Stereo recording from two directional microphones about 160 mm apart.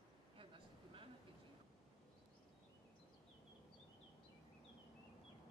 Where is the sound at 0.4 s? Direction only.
35° right (ahead or behind).